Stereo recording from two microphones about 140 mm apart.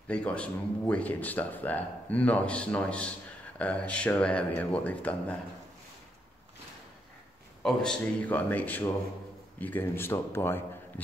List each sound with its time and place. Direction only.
0.1 s speech: 10° left (ahead or behind)
7.6 s speech: 5° left (ahead or behind)